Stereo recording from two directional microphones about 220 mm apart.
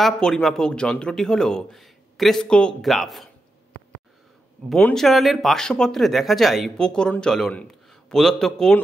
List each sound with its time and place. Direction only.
0.0 s speech: centre (ahead or behind)
4.6 s speech: 5° left (ahead or behind)